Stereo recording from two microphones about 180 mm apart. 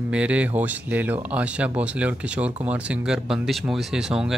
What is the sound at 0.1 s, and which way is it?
Speech, 5° right (ahead or behind).